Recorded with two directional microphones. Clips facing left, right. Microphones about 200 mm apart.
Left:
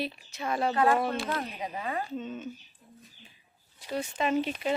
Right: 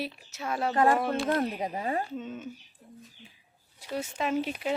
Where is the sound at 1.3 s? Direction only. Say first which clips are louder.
Right 6 dB; 40° right (ahead or behind).